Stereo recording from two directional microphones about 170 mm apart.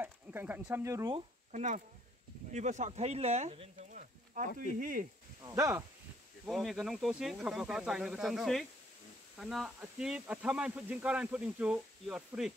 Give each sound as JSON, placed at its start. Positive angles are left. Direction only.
{"t": 0.0, "sound": "speech", "side_deg": -10}
{"t": 1.5, "sound": "speech", "side_deg": -50}
{"t": 5.4, "sound": "speech", "side_deg": -20}
{"t": 6.4, "sound": "speech", "side_deg": 0}